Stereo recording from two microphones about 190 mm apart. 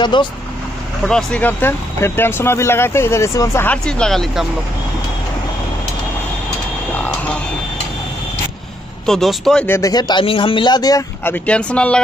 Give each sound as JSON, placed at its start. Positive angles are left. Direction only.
{"t": 0.0, "sound": "a man's voice", "side_deg": 25}
{"t": 1.0, "sound": "speech", "side_deg": 5}
{"t": 9.0, "sound": "speech", "side_deg": 0}
{"t": 9.8, "sound": "a man's voice", "side_deg": 20}